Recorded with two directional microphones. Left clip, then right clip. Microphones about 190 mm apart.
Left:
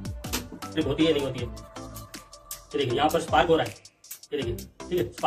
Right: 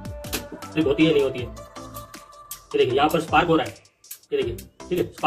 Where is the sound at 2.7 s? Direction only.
20° right (ahead or behind).